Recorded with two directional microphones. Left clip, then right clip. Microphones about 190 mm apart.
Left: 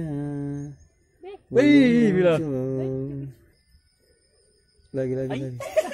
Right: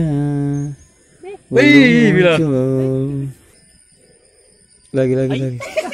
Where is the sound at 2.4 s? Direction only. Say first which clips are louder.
Right 11 dB; 15° right (ahead or behind).